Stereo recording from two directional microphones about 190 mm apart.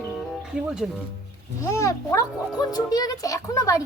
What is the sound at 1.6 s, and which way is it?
A child's voice, 15° left (ahead or behind).